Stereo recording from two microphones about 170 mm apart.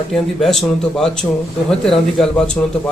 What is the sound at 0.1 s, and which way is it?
Speech, centre (ahead or behind).